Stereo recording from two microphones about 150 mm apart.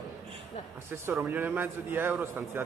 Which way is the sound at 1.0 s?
15° right (ahead or behind).